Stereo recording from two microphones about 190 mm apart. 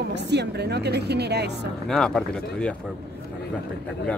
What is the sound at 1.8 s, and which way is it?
Speech, centre (ahead or behind).